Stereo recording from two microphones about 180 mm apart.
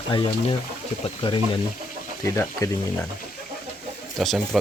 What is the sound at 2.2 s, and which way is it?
Speech, 15° left (ahead or behind).